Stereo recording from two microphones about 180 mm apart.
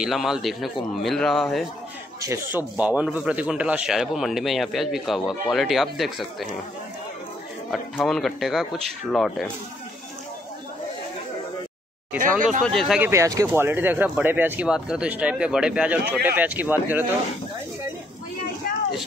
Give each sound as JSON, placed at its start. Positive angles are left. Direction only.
{"t": 0.0, "sound": "a man's voice", "side_deg": 0}
{"t": 2.2, "sound": "a man's voice", "side_deg": -15}
{"t": 7.7, "sound": "a man's voice", "side_deg": 0}
{"t": 12.2, "sound": "speech", "side_deg": -45}
{"t": 12.6, "sound": "a man's voice", "side_deg": 0}
{"t": 13.1, "sound": "speech", "side_deg": -15}